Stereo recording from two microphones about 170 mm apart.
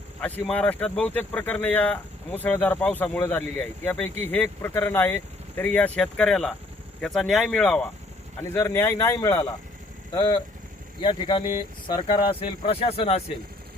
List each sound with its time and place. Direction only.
0.2 s speech: 10° left (ahead or behind); by 13.2 s 35° left (ahead or behind)